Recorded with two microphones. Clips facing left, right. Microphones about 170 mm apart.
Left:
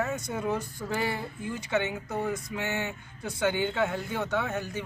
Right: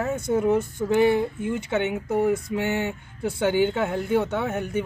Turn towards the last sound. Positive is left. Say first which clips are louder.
# right 4 dB
turn(degrees=-25)  # may be behind; listen again after turning